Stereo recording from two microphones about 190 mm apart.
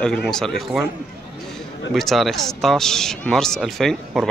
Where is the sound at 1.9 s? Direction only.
Centre (ahead or behind).